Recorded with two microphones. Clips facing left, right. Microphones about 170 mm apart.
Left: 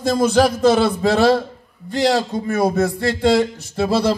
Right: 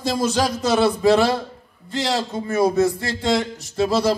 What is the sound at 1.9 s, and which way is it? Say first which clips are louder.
Speech: left 6 dB; 60° left (ahead or behind).